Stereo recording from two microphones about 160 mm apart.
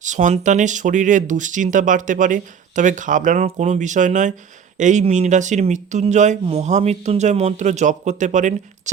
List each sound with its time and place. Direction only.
0.0 s speech: 50° right (ahead or behind)